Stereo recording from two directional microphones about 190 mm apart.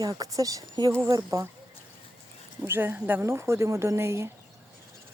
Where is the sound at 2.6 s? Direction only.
10° right (ahead or behind).